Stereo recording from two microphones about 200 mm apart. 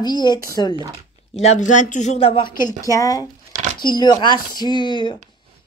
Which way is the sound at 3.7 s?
20° left (ahead or behind).